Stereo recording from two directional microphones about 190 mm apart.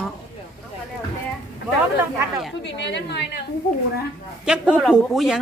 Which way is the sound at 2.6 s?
65° left (ahead or behind).